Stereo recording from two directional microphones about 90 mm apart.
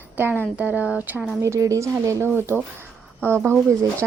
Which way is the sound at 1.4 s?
35° right (ahead or behind).